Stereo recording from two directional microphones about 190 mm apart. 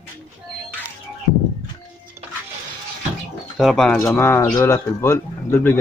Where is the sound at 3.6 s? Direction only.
Centre (ahead or behind).